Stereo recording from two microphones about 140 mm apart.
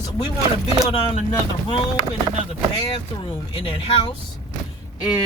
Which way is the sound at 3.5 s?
40° left (ahead or behind).